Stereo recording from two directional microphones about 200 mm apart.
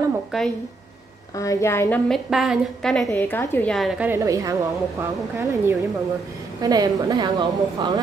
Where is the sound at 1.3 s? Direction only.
15° left (ahead or behind).